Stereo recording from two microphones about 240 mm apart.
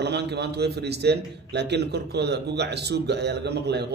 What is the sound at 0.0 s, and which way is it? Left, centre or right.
A man's voice, right.